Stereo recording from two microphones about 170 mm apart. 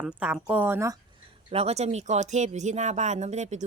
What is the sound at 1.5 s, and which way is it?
Speech, 40° right (ahead or behind).